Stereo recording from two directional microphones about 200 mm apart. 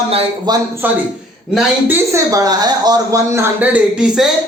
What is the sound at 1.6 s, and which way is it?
Speech, 10° right (ahead or behind).